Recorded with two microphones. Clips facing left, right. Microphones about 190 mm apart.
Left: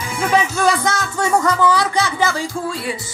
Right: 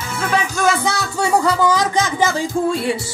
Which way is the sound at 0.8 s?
10° right (ahead or behind).